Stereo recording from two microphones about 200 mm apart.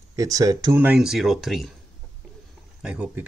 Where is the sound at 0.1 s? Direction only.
15° right (ahead or behind); by 1.7 s centre (ahead or behind).